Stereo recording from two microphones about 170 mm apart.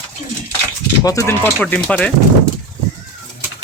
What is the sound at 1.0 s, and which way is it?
Speech, 20° left (ahead or behind).